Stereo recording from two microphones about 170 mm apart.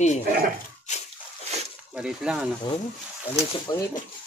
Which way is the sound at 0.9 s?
45° left (ahead or behind).